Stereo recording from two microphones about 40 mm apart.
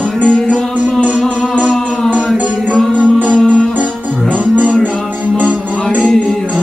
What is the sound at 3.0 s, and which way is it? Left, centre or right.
Music, right.